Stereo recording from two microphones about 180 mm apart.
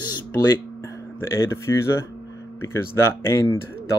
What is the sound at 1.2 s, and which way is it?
Speech, 15° left (ahead or behind).